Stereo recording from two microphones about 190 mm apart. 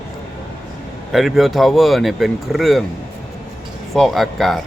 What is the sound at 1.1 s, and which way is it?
Speech, centre (ahead or behind).